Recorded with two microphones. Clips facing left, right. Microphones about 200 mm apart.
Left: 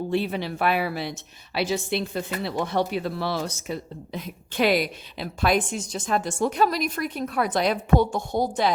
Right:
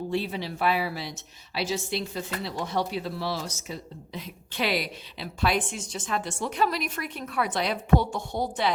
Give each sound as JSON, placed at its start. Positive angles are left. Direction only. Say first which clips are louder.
{"t": 0.1, "sound": "speech", "louder": "left 5 dB", "side_deg": 60}